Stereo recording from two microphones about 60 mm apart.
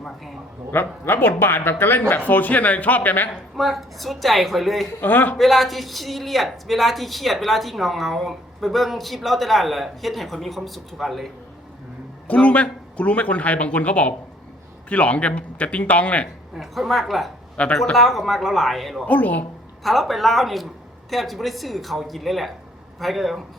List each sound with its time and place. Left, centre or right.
0.7 s speech: left
3.5 s speech: centre
4.9 s speech: left
5.4 s speech: centre
12.3 s speech: left
16.6 s speech: centre
17.6 s speech: centre
17.9 s speech: centre
19.0 s speech: left
19.8 s speech: centre